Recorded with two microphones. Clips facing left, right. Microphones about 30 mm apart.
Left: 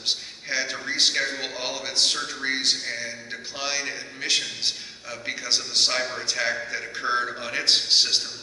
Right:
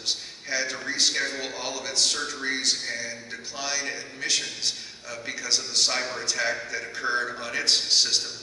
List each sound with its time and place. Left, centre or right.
0.0 s a man's voice: left